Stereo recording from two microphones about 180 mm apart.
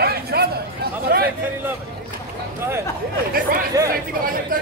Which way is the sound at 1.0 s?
55° right (ahead or behind).